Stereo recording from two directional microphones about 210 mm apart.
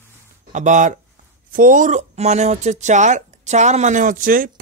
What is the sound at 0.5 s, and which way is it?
Speech, 35° right (ahead or behind).